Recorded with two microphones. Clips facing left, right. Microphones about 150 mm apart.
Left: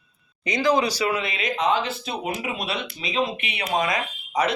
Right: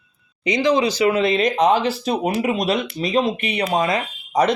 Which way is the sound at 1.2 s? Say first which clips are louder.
Right 8 dB; 40° right (ahead or behind).